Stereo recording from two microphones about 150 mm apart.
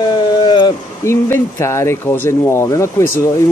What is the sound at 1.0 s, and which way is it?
Speech, 20° left (ahead or behind).